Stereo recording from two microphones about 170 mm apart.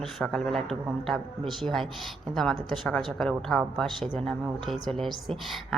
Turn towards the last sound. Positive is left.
turn(degrees=0)  # may be behind; listen again after turning